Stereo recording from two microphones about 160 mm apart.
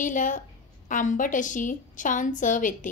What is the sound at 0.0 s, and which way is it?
A woman's voice, 55° left (ahead or behind).